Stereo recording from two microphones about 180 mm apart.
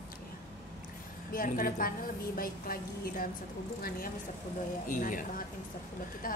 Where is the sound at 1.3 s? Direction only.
50° left (ahead or behind).